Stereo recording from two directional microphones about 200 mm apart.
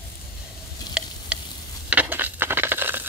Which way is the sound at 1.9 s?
10° right (ahead or behind).